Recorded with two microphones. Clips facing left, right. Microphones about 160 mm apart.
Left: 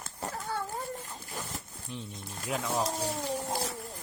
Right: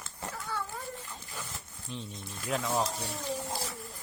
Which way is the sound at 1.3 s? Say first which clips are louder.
Left 4 dB; 40° left (ahead or behind).